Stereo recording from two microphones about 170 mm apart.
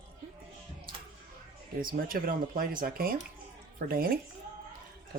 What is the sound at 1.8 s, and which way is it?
Speech, 60° right (ahead or behind).